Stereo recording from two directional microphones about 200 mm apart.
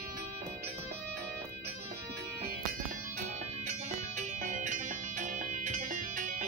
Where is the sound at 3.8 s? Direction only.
35° right (ahead or behind).